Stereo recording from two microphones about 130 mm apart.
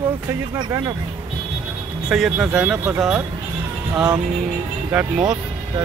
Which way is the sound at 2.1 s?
5° right (ahead or behind).